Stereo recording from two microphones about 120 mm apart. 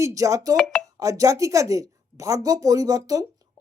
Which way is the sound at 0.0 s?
25° right (ahead or behind).